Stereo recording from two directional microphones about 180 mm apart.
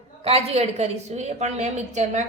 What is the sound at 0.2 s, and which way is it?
A woman's voice, 35° right (ahead or behind).